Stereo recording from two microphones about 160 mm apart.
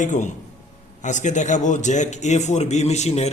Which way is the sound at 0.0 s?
50° left (ahead or behind).